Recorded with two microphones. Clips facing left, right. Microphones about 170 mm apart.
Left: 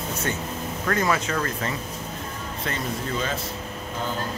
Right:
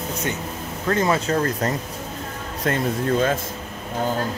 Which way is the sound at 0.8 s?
25° right (ahead or behind).